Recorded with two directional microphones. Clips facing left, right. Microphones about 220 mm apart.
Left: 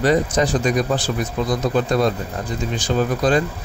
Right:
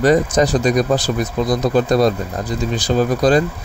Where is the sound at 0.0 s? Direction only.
45° right (ahead or behind).